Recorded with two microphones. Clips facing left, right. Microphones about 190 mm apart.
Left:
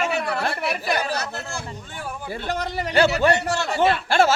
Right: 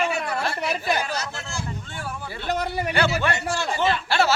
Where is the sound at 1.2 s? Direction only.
60° left (ahead or behind).